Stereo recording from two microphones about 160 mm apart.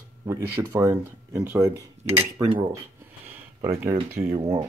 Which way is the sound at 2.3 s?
30° right (ahead or behind).